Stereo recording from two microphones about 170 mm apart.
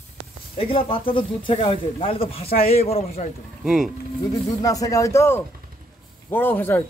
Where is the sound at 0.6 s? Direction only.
35° left (ahead or behind).